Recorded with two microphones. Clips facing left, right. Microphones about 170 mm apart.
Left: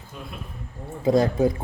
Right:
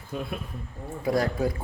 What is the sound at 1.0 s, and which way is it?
Speech, 20° left (ahead or behind).